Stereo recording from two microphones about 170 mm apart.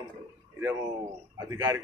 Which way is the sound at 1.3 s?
20° right (ahead or behind).